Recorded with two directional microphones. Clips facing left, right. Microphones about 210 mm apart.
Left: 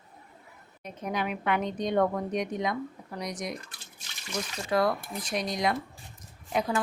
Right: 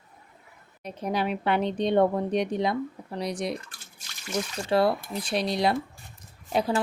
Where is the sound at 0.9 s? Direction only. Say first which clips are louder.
Right 4 dB; 35° right (ahead or behind).